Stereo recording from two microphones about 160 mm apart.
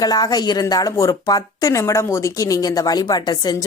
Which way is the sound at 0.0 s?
25° left (ahead or behind).